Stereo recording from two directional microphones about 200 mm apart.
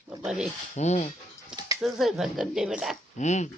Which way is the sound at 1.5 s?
5° right (ahead or behind).